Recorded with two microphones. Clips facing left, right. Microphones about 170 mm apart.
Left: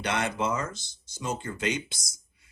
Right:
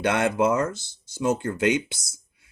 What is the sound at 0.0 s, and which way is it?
Speech, 60° right (ahead or behind).